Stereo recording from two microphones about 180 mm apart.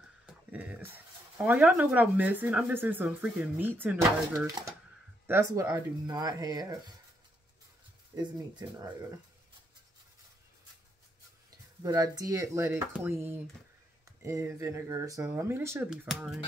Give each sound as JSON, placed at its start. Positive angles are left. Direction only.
{"t": 0.3, "sound": "speech", "side_deg": -5}
{"t": 8.1, "sound": "speech", "side_deg": -20}
{"t": 11.8, "sound": "speech", "side_deg": -20}
{"t": 15.9, "sound": "speech", "side_deg": 0}